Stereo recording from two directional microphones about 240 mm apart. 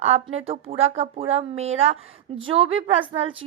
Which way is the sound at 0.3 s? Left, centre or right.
Right.